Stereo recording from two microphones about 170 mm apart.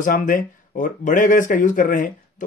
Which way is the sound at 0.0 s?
50° left (ahead or behind).